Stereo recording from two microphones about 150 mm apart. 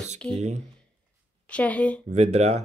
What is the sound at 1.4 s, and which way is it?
Speech, 10° left (ahead or behind).